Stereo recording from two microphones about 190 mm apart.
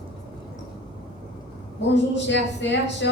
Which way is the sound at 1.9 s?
70° left (ahead or behind).